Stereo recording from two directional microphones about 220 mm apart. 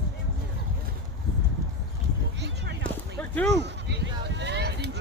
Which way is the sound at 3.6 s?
50° right (ahead or behind).